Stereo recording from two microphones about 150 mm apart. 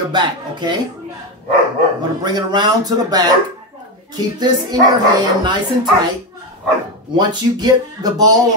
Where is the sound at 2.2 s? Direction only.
30° right (ahead or behind).